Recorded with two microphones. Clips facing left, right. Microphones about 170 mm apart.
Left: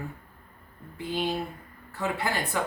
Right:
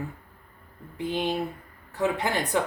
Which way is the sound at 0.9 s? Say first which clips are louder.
Right 2 dB; 20° right (ahead or behind).